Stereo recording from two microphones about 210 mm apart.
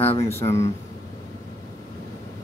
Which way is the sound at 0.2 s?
10° left (ahead or behind).